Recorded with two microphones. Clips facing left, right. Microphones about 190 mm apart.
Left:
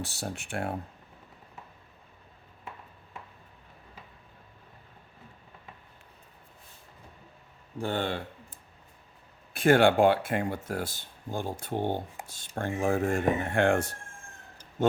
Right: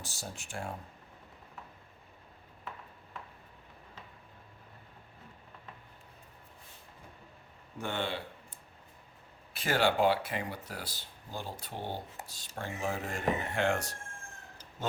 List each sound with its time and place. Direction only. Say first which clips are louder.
0.0 s speech: left 8 dB; 65° left (ahead or behind)
7.8 s speech: left 5 dB; 40° left (ahead or behind)
9.5 s speech: left 8 dB; 55° left (ahead or behind)